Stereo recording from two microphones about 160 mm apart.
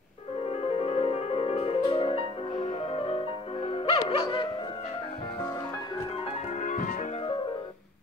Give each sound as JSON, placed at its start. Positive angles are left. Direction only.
{"t": 0.5, "sound": "music", "side_deg": 40}
{"t": 6.6, "sound": "music", "side_deg": 55}